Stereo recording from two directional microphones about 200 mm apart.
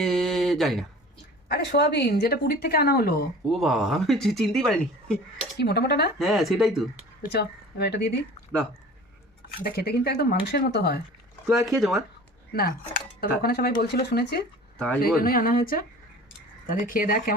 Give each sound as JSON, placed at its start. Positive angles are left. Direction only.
{"t": 0.0, "sound": "a sound", "side_deg": 0}
{"t": 1.5, "sound": "a woman's voice", "side_deg": 55}
{"t": 3.5, "sound": "speech", "side_deg": 0}
{"t": 5.5, "sound": "a woman's voice", "side_deg": 55}
{"t": 6.1, "sound": "speech", "side_deg": 0}
{"t": 7.2, "sound": "speech", "side_deg": 50}
{"t": 9.6, "sound": "a woman's voice", "side_deg": 50}
{"t": 11.4, "sound": "speech", "side_deg": 0}
{"t": 13.1, "sound": "a woman's voice", "side_deg": 50}